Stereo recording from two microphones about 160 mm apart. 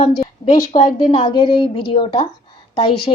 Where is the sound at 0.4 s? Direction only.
30° left (ahead or behind).